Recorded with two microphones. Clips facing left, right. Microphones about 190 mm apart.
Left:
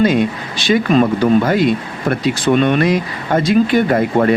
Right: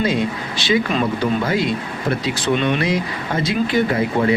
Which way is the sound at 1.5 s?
55° left (ahead or behind).